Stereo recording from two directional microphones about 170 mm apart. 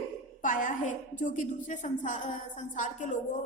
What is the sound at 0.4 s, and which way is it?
A woman's voice, 50° left (ahead or behind).